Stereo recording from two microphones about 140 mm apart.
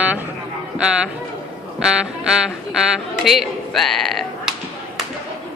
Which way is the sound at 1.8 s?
5° right (ahead or behind).